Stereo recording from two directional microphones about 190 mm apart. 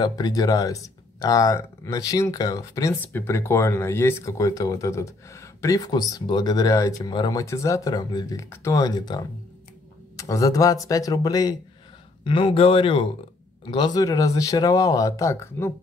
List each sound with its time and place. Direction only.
0.0 s speech: 20° left (ahead or behind)